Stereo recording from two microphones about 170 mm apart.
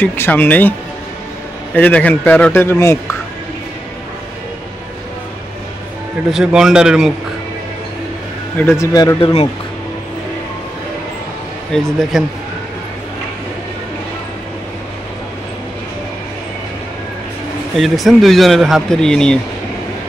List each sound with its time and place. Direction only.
0.0 s a man's voice: 10° left (ahead or behind)
1.8 s a man's voice: 10° left (ahead or behind)
6.3 s speech: 5° right (ahead or behind)
8.5 s a man's voice: 15° left (ahead or behind)
11.7 s speech: 5° left (ahead or behind)
17.7 s speech: centre (ahead or behind)